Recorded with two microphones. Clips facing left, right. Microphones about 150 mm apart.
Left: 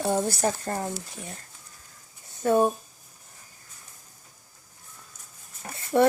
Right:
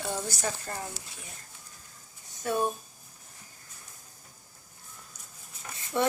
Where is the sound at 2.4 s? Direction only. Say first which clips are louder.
Left 8 dB; 40° left (ahead or behind).